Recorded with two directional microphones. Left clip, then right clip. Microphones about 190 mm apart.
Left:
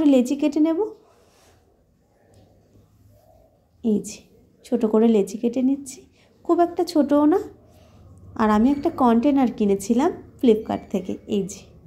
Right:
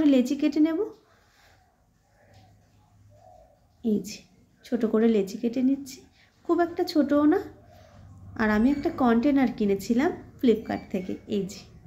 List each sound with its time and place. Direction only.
0.0 s speech: 15° left (ahead or behind)
3.8 s a woman's voice: 15° left (ahead or behind)